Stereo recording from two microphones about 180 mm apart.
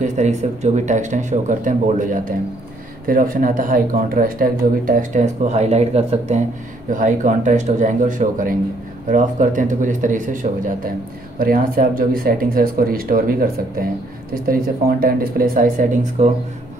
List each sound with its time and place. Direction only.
0.0 s speech: 40° right (ahead or behind)